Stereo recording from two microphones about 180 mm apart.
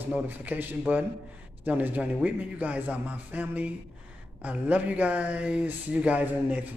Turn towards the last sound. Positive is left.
turn(degrees=-10)  # may be behind; listen again after turning